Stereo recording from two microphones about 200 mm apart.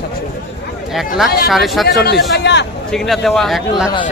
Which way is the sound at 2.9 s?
Centre (ahead or behind).